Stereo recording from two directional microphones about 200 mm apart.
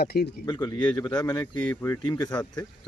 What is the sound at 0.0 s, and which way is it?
Speech, 50° left (ahead or behind).